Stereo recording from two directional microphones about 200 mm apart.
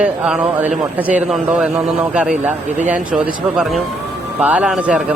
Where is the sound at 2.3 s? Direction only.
40° right (ahead or behind).